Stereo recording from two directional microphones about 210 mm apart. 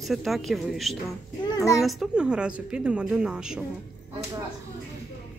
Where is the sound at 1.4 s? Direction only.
15° left (ahead or behind).